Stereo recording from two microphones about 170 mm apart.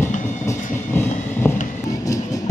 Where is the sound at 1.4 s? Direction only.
15° left (ahead or behind).